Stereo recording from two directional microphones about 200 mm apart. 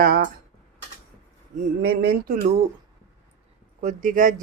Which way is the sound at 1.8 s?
50° right (ahead or behind).